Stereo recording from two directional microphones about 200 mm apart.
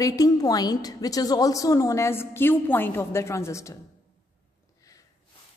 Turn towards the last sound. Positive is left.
turn(degrees=15)  # may be behind; listen again after turning